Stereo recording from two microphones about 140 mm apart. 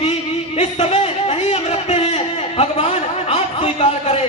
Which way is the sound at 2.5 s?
45° left (ahead or behind).